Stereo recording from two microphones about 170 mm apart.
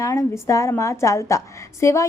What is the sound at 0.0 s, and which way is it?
A woman's voice, 20° left (ahead or behind).